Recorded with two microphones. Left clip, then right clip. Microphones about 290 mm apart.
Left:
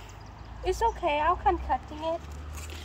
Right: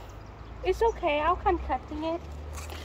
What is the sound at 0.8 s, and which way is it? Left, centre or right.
Speech, left.